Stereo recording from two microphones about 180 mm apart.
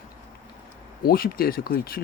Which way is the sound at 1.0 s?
55° left (ahead or behind).